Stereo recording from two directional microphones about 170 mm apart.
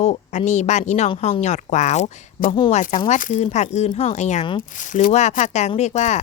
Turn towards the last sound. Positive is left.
turn(degrees=45)  # may be behind; listen again after turning